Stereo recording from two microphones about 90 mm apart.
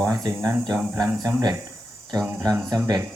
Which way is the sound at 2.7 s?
45° right (ahead or behind).